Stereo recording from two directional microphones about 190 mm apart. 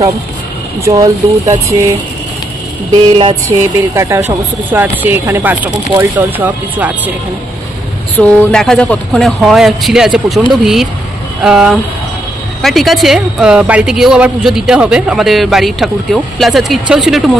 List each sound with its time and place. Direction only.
0.8 s speech: 20° right (ahead or behind)
2.9 s speech: 25° right (ahead or behind); by 7.0 s 10° right (ahead or behind)
8.2 s speech: 5° left (ahead or behind)